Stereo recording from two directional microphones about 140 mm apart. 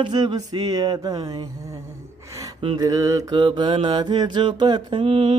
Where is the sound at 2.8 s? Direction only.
25° right (ahead or behind).